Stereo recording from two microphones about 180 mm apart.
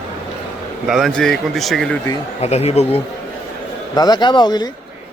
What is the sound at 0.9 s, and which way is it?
Speech, centre (ahead or behind).